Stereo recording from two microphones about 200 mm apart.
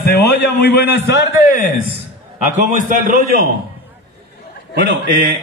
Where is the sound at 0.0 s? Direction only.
55° left (ahead or behind).